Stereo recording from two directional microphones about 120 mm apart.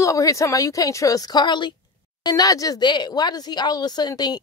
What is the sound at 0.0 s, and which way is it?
A woman's voice, 25° left (ahead or behind).